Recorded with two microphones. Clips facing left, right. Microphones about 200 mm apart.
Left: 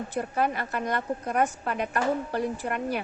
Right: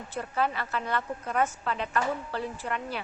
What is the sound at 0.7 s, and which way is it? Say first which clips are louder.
Speech: left 3 dB; 15° left (ahead or behind).